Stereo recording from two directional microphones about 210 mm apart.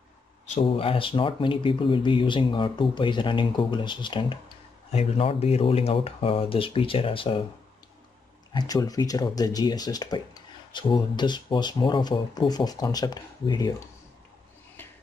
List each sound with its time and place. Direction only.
0.6 s speech: 25° left (ahead or behind)
8.5 s speech: 15° left (ahead or behind)